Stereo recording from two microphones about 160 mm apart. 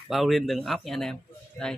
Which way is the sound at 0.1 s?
Centre (ahead or behind).